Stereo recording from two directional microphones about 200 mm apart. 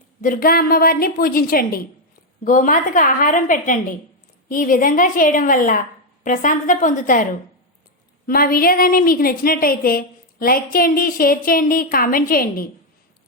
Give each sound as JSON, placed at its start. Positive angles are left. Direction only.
{"t": 0.2, "sound": "a woman's voice", "side_deg": 45}
{"t": 8.3, "sound": "a woman's voice", "side_deg": 45}